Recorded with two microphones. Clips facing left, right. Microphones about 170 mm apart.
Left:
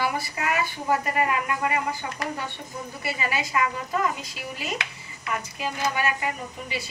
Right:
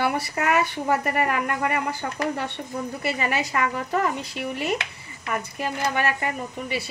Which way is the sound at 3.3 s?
60° right (ahead or behind).